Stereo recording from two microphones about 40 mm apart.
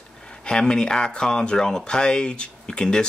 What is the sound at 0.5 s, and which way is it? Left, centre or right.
Speech, left.